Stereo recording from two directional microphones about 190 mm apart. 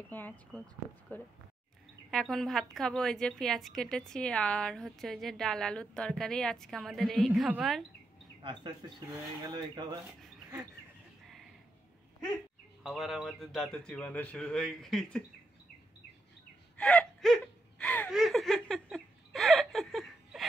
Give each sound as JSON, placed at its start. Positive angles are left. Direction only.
{"t": 0.1, "sound": "a woman's voice", "side_deg": 10}
{"t": 8.4, "sound": "speech", "side_deg": -25}
{"t": 12.8, "sound": "a woman's voice", "side_deg": 0}
{"t": 16.7, "sound": "gasp", "side_deg": 5}
{"t": 18.1, "sound": "laughter", "side_deg": 0}